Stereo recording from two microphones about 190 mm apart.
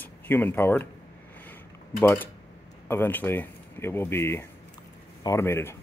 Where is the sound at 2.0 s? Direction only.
10° left (ahead or behind).